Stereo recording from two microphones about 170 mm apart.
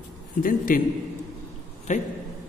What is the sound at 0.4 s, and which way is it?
Speech, 55° left (ahead or behind).